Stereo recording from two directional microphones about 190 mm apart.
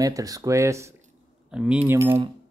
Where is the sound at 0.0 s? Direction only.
20° right (ahead or behind).